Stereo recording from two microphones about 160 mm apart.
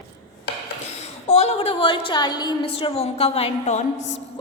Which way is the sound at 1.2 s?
40° left (ahead or behind).